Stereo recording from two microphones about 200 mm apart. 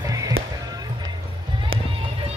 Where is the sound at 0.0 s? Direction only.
15° right (ahead or behind).